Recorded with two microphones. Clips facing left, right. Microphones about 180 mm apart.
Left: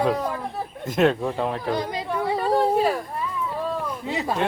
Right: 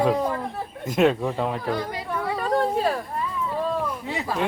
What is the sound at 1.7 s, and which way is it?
Yodeling, 20° left (ahead or behind).